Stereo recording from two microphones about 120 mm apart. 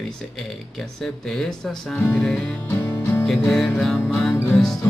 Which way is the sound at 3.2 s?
5° left (ahead or behind).